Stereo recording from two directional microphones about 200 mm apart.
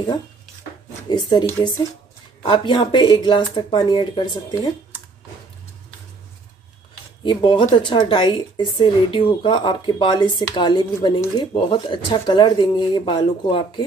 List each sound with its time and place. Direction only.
1.0 s speech: 20° left (ahead or behind)
7.2 s speech: 25° left (ahead or behind)